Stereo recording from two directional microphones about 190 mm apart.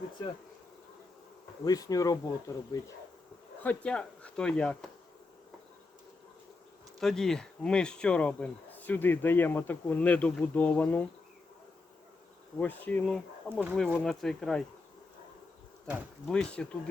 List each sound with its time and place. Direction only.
1.6 s speech: 20° left (ahead or behind)
3.6 s speech: 5° left (ahead or behind)
7.0 s speech: 5° left (ahead or behind)
12.5 s speech: 10° left (ahead or behind)
15.9 s speech: centre (ahead or behind)